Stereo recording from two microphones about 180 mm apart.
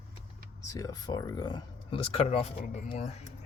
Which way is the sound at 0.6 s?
20° left (ahead or behind).